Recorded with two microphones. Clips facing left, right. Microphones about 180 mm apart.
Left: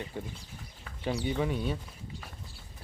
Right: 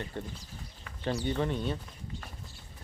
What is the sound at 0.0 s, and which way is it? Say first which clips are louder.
Speech: even; 10° left (ahead or behind).